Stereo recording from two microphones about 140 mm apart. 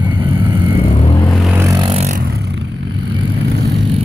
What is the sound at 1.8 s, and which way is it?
Vehicle, 45° right (ahead or behind).